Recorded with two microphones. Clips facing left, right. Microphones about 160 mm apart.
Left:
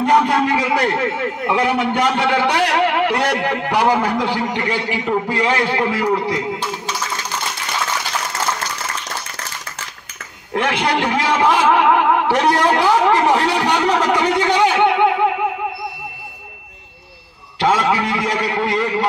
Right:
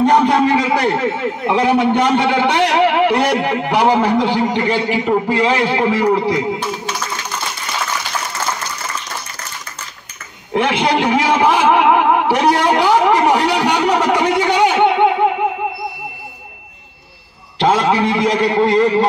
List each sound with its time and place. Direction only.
0.1 s a man's voice: 20° right (ahead or behind)
10.5 s a man's voice: 15° right (ahead or behind)
17.6 s a man's voice: 20° right (ahead or behind)